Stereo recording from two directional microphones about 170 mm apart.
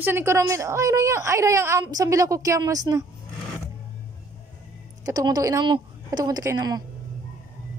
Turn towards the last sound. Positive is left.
turn(degrees=-25)  # may be behind; listen again after turning